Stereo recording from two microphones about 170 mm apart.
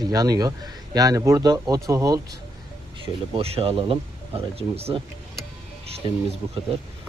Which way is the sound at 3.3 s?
35° right (ahead or behind).